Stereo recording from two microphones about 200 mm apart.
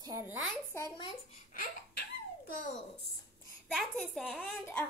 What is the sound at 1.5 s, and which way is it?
Baby laughter, 45° left (ahead or behind).